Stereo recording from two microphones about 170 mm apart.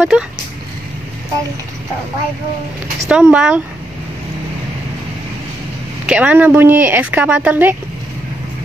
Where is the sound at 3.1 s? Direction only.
5° right (ahead or behind).